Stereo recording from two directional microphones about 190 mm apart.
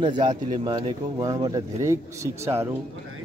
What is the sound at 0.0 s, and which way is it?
A man's voice, 25° right (ahead or behind).